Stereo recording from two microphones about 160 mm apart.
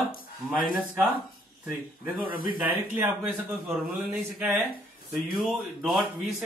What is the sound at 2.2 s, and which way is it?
Speech, 60° left (ahead or behind).